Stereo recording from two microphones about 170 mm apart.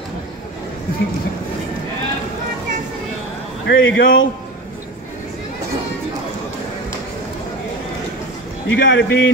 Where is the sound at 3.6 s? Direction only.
90° left.